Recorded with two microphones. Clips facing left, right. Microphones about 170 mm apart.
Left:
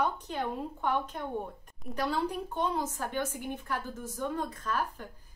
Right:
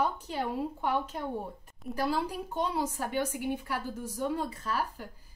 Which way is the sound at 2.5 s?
10° right (ahead or behind).